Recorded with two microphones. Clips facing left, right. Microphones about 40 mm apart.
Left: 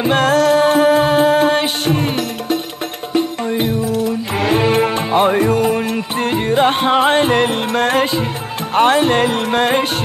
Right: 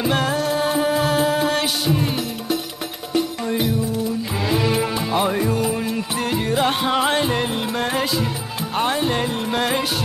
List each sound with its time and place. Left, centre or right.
0.2 s music: left
0.6 s music: left
0.8 s music: left
3.1 s music: left
7.3 s music: left
9.5 s music: left